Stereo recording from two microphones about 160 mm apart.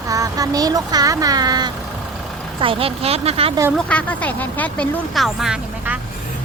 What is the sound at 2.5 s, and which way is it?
Speech, 35° right (ahead or behind).